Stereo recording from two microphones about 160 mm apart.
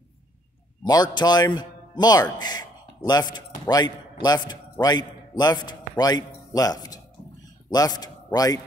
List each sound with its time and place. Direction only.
0.8 s a man's voice: 25° left (ahead or behind)